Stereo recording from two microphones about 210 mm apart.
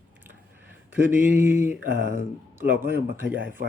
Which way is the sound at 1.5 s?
35° left (ahead or behind).